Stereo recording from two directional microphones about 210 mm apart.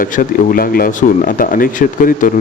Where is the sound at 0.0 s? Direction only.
40° left (ahead or behind).